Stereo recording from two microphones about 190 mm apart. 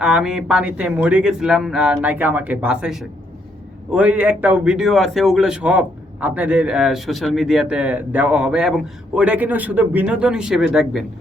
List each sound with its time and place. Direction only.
0.0 s a man's voice: 5° right (ahead or behind)